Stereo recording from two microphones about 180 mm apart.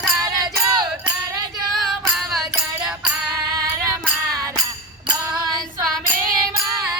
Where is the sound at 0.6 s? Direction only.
25° right (ahead or behind).